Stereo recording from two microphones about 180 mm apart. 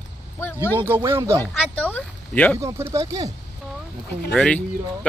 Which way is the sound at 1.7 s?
10° left (ahead or behind).